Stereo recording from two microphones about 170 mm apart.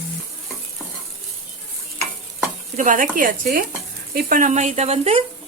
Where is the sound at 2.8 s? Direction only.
50° right (ahead or behind).